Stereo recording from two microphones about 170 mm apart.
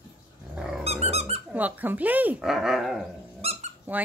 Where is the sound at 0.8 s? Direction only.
40° right (ahead or behind).